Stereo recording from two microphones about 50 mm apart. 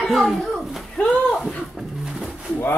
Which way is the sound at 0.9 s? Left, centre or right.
Left.